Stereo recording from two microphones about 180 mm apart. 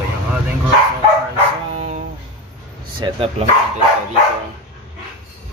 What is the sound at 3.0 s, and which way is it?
Speech, 30° right (ahead or behind).